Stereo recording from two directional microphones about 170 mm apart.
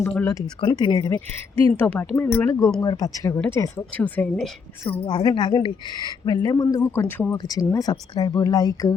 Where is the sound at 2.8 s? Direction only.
20° left (ahead or behind); by 4.5 s 5° left (ahead or behind).